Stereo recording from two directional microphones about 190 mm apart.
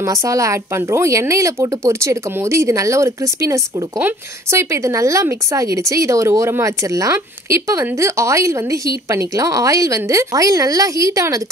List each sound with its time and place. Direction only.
0.0 s a woman's voice: 15° right (ahead or behind)